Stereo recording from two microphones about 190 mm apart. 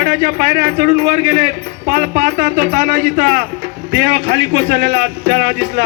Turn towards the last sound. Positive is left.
turn(degrees=-60)  # may be behind; listen again after turning